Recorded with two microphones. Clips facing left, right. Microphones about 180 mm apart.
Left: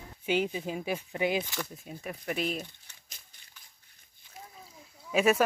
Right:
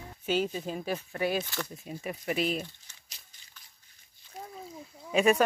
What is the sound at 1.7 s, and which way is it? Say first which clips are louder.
Speech: right 3 dB; centre (ahead or behind).